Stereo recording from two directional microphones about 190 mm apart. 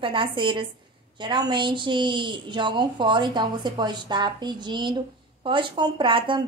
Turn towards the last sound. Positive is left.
turn(degrees=-25)  # may be behind; listen again after turning